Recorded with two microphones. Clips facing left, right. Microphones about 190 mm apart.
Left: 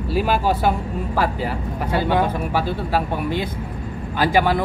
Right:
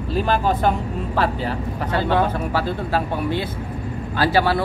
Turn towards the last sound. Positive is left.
turn(degrees=15)  # may be behind; listen again after turning